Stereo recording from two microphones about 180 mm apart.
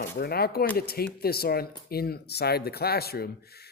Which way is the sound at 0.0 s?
60° left (ahead or behind).